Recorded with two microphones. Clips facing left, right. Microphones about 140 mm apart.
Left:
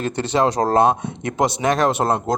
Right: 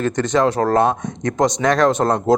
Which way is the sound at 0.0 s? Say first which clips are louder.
Right 2 dB; 15° left (ahead or behind).